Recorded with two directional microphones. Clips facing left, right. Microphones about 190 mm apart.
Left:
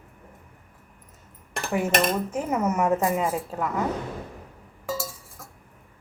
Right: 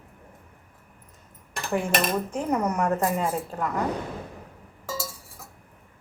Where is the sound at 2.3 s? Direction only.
5° left (ahead or behind).